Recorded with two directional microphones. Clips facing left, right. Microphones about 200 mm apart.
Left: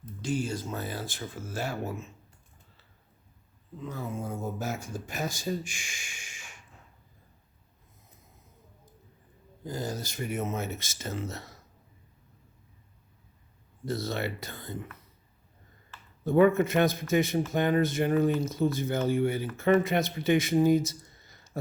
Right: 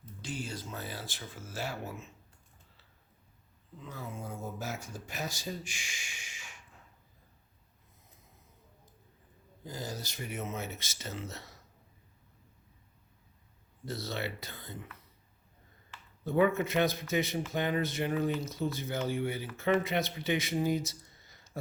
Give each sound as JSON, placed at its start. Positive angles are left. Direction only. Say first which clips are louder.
{"t": 0.2, "sound": "speech", "louder": "left 9 dB", "side_deg": 45}
{"t": 3.8, "sound": "speech", "louder": "left 7 dB", "side_deg": 45}
{"t": 9.6, "sound": "speech", "louder": "left 6 dB", "side_deg": 50}
{"t": 13.8, "sound": "speech", "louder": "left 5 dB", "side_deg": 50}
{"t": 16.2, "sound": "speech", "louder": "left 6 dB", "side_deg": 50}